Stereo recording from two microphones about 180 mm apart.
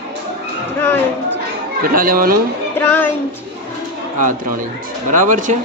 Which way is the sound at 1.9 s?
55° right (ahead or behind).